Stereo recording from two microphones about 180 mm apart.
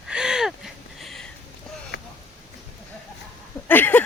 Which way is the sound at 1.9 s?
75° left (ahead or behind).